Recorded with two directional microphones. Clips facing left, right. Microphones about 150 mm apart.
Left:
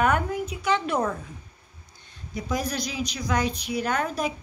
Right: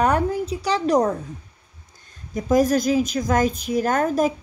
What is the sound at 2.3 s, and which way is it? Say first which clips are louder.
A woman's voice: right 11 dB; 45° right (ahead or behind).